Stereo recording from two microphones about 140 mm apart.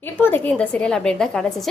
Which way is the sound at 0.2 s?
15° left (ahead or behind).